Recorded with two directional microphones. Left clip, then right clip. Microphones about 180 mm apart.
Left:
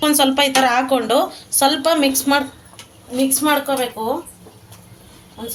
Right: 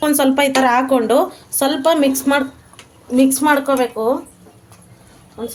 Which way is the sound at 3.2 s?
70° right (ahead or behind).